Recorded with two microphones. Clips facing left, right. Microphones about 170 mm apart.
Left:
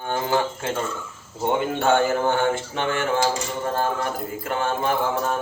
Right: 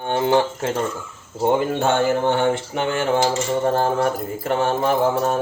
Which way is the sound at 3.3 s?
25° right (ahead or behind).